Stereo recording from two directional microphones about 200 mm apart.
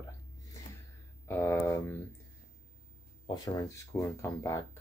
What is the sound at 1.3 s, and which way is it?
Speech, 10° left (ahead or behind).